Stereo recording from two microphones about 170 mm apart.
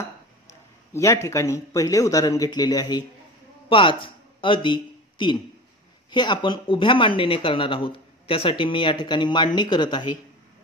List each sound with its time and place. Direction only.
0.9 s speech: 15° left (ahead or behind)